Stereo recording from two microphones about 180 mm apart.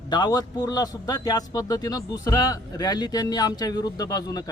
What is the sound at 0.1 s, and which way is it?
A man's voice, 25° left (ahead or behind).